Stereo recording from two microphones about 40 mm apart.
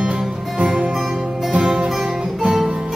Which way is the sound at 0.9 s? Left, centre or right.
Centre.